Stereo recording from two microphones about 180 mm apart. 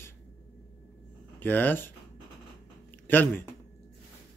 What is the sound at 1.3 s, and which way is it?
Speech, 10° left (ahead or behind).